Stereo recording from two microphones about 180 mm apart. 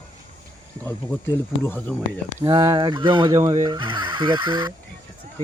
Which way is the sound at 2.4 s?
20° right (ahead or behind).